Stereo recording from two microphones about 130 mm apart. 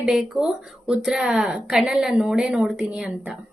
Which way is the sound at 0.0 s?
5° right (ahead or behind).